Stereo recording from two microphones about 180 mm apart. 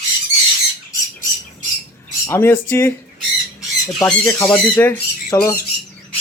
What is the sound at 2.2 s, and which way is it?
Speech, 15° left (ahead or behind).